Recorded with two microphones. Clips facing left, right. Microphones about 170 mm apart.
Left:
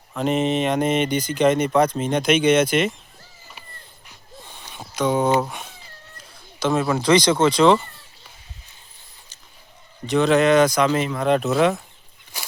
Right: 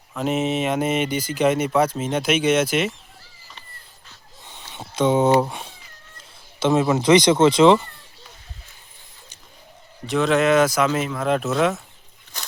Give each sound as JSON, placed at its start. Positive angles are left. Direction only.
{"t": 0.1, "sound": "speech", "side_deg": -5}
{"t": 4.7, "sound": "a sound", "side_deg": -25}
{"t": 5.5, "sound": "speech", "side_deg": -30}
{"t": 10.1, "sound": "speech", "side_deg": 0}